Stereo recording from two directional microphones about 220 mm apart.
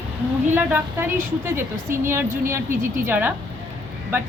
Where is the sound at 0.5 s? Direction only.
10° right (ahead or behind).